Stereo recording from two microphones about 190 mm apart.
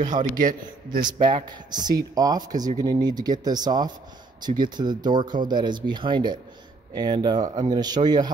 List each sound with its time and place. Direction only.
0.0 s a man's voice: 45° right (ahead or behind)
0.9 s speech: 25° right (ahead or behind)